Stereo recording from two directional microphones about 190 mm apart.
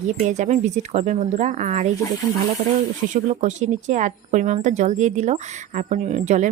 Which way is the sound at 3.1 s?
40° right (ahead or behind).